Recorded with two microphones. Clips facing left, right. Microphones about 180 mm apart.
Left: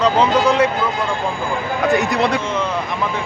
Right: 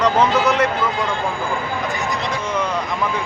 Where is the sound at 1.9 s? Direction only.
65° left (ahead or behind).